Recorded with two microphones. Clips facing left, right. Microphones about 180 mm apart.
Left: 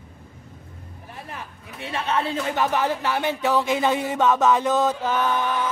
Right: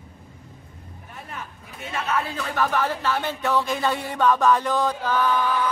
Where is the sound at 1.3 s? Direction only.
30° left (ahead or behind).